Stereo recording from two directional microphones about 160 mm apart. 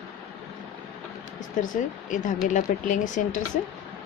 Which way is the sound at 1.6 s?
55° left (ahead or behind).